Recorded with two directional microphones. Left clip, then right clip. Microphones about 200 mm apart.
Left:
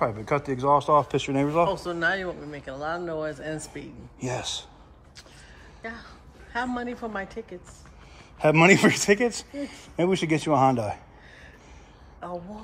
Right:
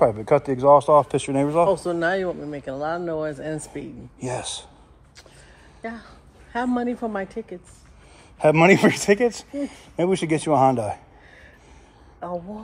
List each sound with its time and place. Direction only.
0.0 s speech: centre (ahead or behind)
1.7 s speech: 25° right (ahead or behind)
4.2 s speech: 5° left (ahead or behind)
5.8 s a woman's voice: 30° right (ahead or behind)
8.4 s speech: 5° left (ahead or behind)
12.2 s speech: 35° right (ahead or behind)